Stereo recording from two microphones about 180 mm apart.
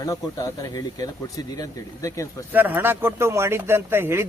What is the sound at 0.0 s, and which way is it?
Speech, 20° left (ahead or behind).